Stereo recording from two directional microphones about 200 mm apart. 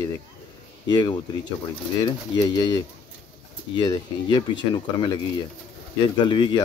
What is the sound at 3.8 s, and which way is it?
Speech, 20° left (ahead or behind).